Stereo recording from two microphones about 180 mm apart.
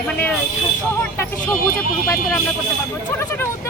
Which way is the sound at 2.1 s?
15° left (ahead or behind).